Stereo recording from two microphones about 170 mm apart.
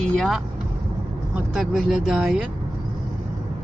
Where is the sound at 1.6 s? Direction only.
Centre (ahead or behind).